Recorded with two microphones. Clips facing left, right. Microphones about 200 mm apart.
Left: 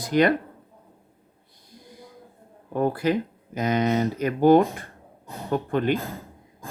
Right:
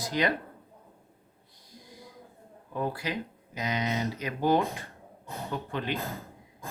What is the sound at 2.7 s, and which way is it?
Speech, 55° left (ahead or behind).